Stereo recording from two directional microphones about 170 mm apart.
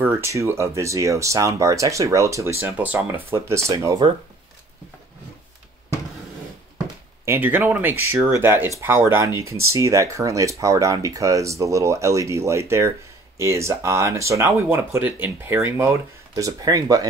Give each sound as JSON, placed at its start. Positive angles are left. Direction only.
{"t": 0.0, "sound": "speech", "side_deg": -15}
{"t": 7.2, "sound": "speech", "side_deg": -10}